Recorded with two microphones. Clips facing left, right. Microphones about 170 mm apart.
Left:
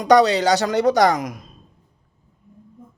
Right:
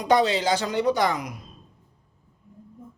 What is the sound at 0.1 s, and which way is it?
Speech, 70° left (ahead or behind).